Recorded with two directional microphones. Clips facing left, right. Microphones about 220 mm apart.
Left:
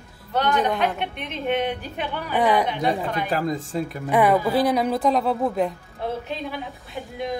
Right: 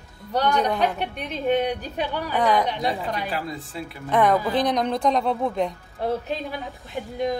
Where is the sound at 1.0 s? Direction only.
40° right (ahead or behind).